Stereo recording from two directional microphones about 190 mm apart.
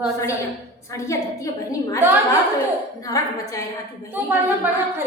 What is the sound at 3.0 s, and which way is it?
Speech, 15° left (ahead or behind).